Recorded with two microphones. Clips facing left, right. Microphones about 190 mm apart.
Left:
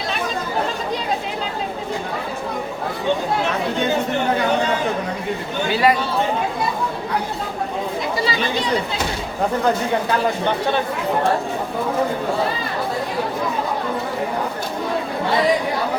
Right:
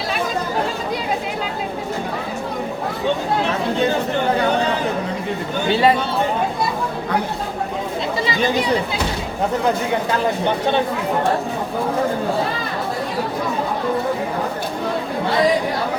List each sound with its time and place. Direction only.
5.7 s speech: 30° right (ahead or behind)